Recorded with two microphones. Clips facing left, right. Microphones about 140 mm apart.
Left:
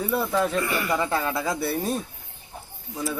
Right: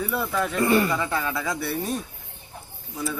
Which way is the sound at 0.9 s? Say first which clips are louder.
Left 1 dB; 30° left (ahead or behind).